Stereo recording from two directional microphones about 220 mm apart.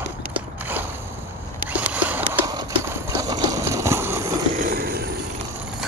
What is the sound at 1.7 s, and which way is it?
Horse, 5° right (ahead or behind).